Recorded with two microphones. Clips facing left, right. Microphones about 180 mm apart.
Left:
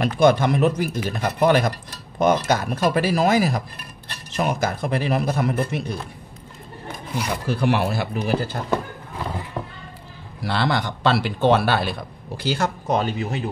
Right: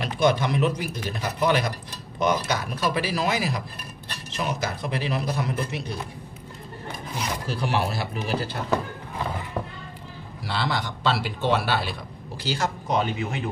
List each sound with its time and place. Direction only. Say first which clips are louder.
0.0 s speech: left 5 dB; 50° left (ahead or behind)
7.4 s speech: left 6 dB; 55° left (ahead or behind)
10.4 s speech: left 5 dB; 60° left (ahead or behind); by 13.4 s 40° left (ahead or behind)